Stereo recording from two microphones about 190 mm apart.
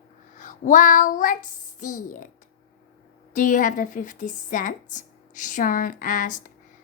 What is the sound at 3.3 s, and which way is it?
A woman's voice, 45° left (ahead or behind).